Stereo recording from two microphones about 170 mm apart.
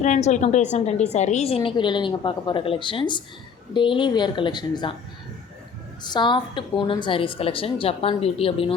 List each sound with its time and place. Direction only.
0.0 s a woman's voice: 45° left (ahead or behind); by 4.9 s 25° left (ahead or behind)
6.0 s a woman's voice: 25° left (ahead or behind)